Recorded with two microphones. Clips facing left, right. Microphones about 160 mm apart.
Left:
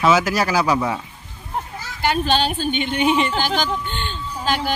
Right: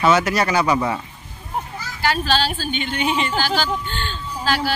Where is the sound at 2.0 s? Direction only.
20° left (ahead or behind).